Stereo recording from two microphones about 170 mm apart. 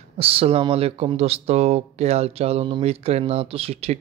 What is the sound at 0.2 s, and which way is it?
Speech, 35° right (ahead or behind).